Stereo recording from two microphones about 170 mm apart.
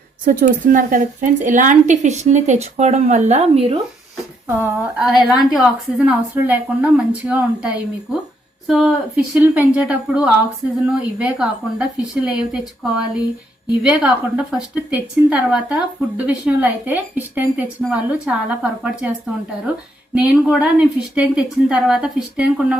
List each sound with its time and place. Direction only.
0.3 s a woman's voice: 55° right (ahead or behind); by 3.8 s 35° right (ahead or behind)
4.4 s a woman's voice: 15° right (ahead or behind)
5.0 s a woman's voice: centre (ahead or behind)
20.1 s a woman's voice: 5° right (ahead or behind)